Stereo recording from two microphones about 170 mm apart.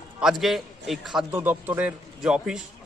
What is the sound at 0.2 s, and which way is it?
A man's voice, centre (ahead or behind).